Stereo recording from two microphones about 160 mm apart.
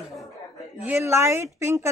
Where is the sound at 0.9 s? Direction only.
15° right (ahead or behind).